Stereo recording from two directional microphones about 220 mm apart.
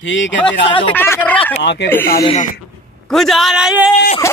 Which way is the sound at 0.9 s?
10° left (ahead or behind).